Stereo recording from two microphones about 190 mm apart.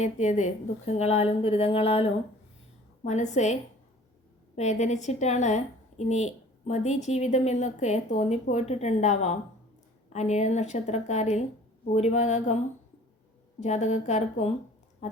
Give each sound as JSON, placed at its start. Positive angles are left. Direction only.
{"t": 0.0, "sound": "a woman's voice", "side_deg": 40}
{"t": 13.6, "sound": "a woman's voice", "side_deg": 35}